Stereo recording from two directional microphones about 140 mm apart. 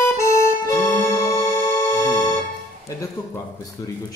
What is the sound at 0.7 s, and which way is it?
Organ, 20° left (ahead or behind).